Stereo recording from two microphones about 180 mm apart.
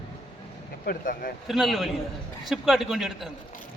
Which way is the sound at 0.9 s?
50° left (ahead or behind).